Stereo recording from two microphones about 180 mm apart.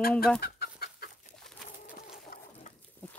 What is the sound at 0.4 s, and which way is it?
Chicken, 60° left (ahead or behind).